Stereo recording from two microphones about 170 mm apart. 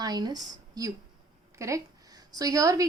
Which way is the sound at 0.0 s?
25° right (ahead or behind).